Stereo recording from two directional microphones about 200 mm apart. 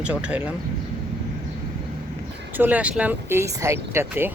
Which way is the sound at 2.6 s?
10° right (ahead or behind).